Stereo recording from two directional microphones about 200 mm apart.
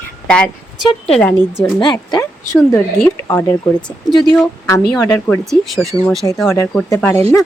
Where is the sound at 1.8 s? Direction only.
20° left (ahead or behind).